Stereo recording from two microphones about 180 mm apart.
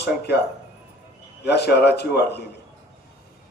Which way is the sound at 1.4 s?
65° left (ahead or behind).